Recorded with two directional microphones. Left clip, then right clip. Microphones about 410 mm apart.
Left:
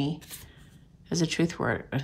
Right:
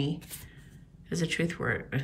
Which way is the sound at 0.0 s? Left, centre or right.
Centre.